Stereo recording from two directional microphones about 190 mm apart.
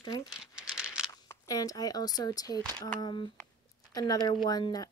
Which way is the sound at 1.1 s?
20° left (ahead or behind).